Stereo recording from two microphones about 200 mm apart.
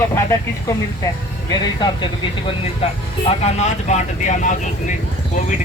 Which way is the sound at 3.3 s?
35° left (ahead or behind).